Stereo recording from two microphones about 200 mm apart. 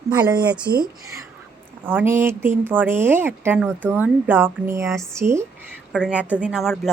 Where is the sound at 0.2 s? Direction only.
20° right (ahead or behind).